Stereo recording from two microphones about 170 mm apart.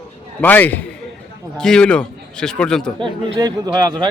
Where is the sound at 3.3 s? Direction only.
25° right (ahead or behind).